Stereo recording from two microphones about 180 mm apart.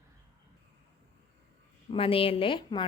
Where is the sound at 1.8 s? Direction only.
30° left (ahead or behind).